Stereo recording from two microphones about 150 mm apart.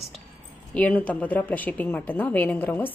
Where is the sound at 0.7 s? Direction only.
10° left (ahead or behind).